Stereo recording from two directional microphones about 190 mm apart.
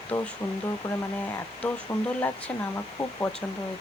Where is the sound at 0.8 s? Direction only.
20° left (ahead or behind).